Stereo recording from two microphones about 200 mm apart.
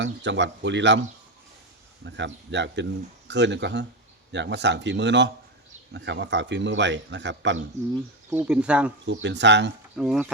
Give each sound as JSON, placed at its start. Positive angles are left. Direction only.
{"t": 0.0, "sound": "speech", "side_deg": -65}
{"t": 2.0, "sound": "speech", "side_deg": -65}
{"t": 8.3, "sound": "speech", "side_deg": -5}
{"t": 9.0, "sound": "speech", "side_deg": -60}
{"t": 10.0, "sound": "speech", "side_deg": 0}